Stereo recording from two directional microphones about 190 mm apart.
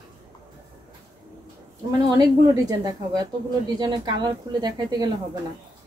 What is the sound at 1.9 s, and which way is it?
A woman's voice, 20° right (ahead or behind).